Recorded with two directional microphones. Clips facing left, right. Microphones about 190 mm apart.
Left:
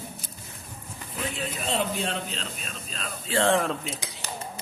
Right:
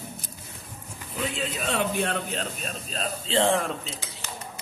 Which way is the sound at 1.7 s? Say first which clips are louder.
Right 2 dB; 55° right (ahead or behind).